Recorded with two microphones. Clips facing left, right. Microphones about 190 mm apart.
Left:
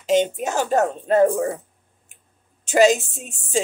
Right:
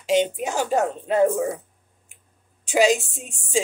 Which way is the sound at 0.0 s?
10° right (ahead or behind).